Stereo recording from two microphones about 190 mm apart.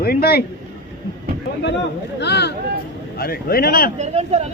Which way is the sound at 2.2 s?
60° left (ahead or behind).